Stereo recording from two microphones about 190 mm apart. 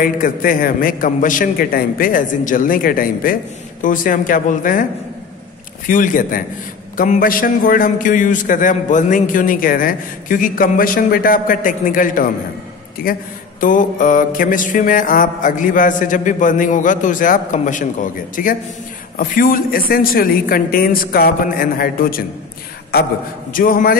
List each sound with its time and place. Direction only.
0.0 s a man's voice: 45° left (ahead or behind)
5.9 s a man's voice: 45° left (ahead or behind)
23.5 s a man's voice: 50° left (ahead or behind)